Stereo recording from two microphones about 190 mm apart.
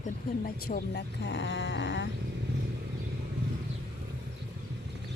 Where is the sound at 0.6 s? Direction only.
65° left (ahead or behind).